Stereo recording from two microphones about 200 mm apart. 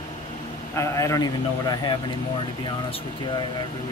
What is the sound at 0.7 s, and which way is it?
A man's voice, 15° left (ahead or behind).